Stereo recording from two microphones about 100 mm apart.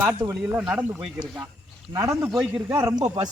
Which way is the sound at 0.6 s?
10° right (ahead or behind).